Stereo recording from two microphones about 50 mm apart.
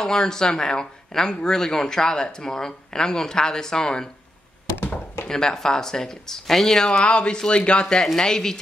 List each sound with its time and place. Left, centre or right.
0.0 s speech: centre
4.7 s a sound: left
5.3 s speech: centre
7.1 s speech: centre